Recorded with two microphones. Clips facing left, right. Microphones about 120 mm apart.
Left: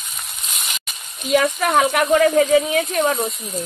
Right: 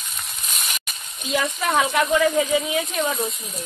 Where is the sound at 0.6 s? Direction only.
15° left (ahead or behind).